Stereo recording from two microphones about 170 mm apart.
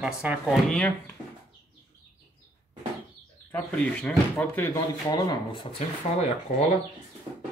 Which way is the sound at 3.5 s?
10° left (ahead or behind).